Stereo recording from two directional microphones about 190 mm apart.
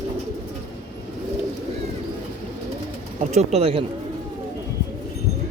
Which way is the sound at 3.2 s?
35° right (ahead or behind).